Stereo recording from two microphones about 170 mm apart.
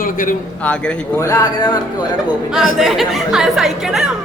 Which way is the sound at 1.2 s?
20° left (ahead or behind).